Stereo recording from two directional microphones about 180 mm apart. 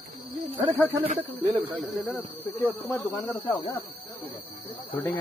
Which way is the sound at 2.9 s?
15° left (ahead or behind).